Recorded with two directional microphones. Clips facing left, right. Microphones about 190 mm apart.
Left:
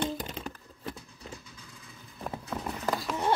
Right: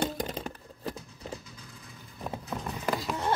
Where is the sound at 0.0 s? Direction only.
40° right (ahead or behind).